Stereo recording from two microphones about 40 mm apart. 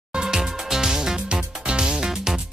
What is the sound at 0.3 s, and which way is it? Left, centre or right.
Music, centre.